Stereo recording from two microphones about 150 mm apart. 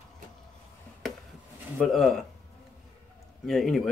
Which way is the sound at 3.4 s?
Centre (ahead or behind).